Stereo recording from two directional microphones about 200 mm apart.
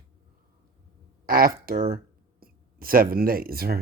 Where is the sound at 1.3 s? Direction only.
45° right (ahead or behind).